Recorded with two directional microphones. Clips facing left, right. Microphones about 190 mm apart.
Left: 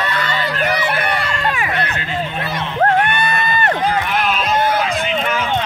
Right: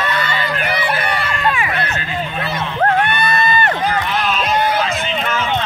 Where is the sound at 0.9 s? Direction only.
55° left (ahead or behind).